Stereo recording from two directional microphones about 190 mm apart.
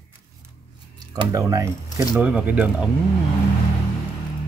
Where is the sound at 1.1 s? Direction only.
15° right (ahead or behind).